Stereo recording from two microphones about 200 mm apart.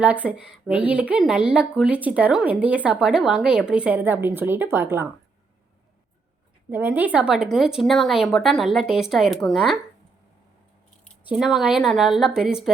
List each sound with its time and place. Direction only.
0.0 s a woman's voice: 5° right (ahead or behind)
6.7 s speech: 10° right (ahead or behind)
11.3 s speech: centre (ahead or behind)